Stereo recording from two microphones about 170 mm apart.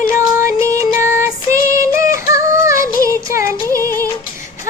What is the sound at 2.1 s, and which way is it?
Music, 20° right (ahead or behind).